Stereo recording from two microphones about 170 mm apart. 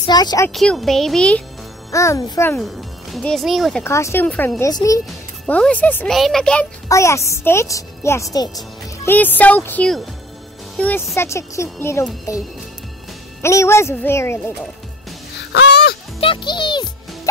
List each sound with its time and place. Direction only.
0.0 s a child's voice: 25° left (ahead or behind)
0.5 s a child's voice: centre (ahead or behind)
1.9 s speech: 20° left (ahead or behind)
2.5 s speech: centre (ahead or behind)
3.8 s speech: 15° left (ahead or behind)
5.5 s a child's voice: 10° left (ahead or behind)
6.9 s a woman's voice: 15° left (ahead or behind)
9.1 s speech: 10° left (ahead or behind)
13.4 s speech: 15° left (ahead or behind)
15.5 s honk: 75° left (ahead or behind)
16.2 s a child's voice: 30° left (ahead or behind)